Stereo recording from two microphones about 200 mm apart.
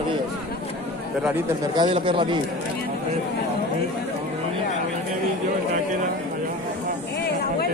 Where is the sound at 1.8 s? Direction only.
25° right (ahead or behind).